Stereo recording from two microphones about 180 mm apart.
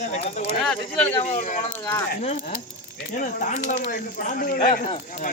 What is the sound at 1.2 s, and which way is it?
Speech, 40° left (ahead or behind).